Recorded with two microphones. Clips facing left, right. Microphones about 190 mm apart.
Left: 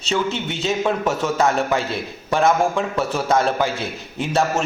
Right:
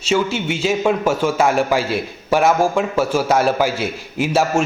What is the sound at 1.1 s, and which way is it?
Speech, 30° right (ahead or behind).